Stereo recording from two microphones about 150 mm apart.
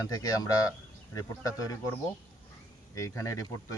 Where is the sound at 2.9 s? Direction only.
20° left (ahead or behind).